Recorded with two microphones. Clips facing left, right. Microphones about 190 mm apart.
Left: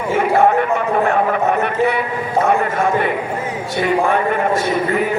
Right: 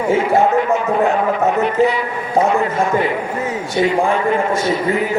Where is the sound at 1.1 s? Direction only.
60° left (ahead or behind).